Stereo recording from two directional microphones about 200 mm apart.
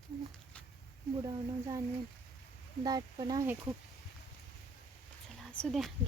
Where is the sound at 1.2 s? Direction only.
15° right (ahead or behind).